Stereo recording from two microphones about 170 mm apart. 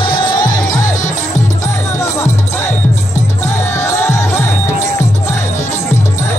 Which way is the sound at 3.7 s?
15° left (ahead or behind).